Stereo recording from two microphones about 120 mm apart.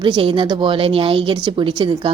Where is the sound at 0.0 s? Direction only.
45° right (ahead or behind).